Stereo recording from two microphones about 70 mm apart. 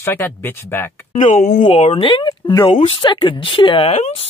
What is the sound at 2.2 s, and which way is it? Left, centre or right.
Speech, left.